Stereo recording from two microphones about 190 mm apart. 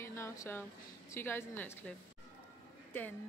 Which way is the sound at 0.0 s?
15° left (ahead or behind).